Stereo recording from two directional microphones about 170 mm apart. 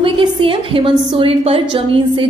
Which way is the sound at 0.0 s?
30° right (ahead or behind).